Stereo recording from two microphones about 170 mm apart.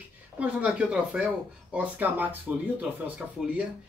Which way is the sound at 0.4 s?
5° right (ahead or behind).